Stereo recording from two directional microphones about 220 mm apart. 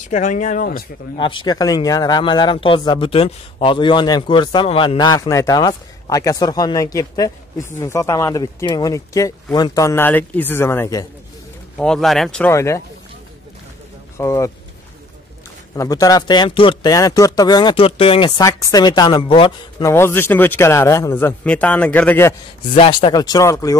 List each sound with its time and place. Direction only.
0.1 s speech: 35° left (ahead or behind)
1.1 s a man's voice: 20° left (ahead or behind)
11.7 s speech: centre (ahead or behind)
14.1 s a man's voice: 15° left (ahead or behind)
15.7 s speech: 15° left (ahead or behind)
19.9 s a man's voice: 10° left (ahead or behind)
22.8 s a man's voice: 20° left (ahead or behind)